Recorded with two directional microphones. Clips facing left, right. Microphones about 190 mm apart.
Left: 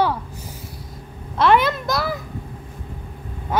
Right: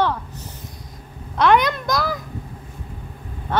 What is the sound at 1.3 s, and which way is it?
Speech, 5° left (ahead or behind).